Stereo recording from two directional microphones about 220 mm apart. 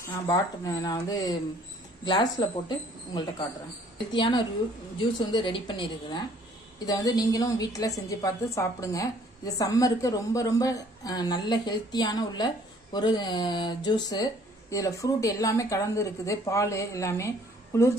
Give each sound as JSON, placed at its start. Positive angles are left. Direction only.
{"t": 0.0, "sound": "a woman's voice", "side_deg": 15}
{"t": 4.1, "sound": "a woman's voice", "side_deg": 20}